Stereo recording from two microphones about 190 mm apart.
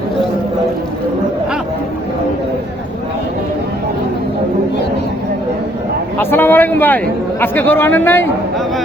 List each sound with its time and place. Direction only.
6.3 s a man's voice: 10° left (ahead or behind)